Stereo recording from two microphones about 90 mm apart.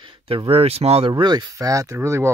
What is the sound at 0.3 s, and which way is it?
Speech, 90° right.